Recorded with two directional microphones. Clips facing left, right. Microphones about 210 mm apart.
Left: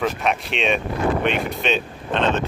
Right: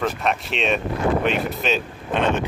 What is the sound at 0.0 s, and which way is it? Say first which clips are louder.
Speech: left 1 dB; centre (ahead or behind).